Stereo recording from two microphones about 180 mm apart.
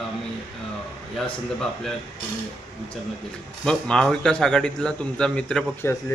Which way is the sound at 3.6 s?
5° left (ahead or behind).